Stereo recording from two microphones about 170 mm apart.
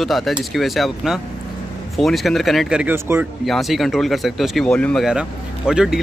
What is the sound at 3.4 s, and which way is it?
Speech, centre (ahead or behind).